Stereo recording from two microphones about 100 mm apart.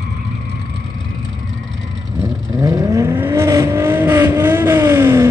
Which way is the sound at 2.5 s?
30° right (ahead or behind).